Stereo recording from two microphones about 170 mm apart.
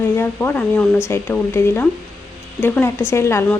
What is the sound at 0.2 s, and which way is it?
A woman's voice, 10° left (ahead or behind).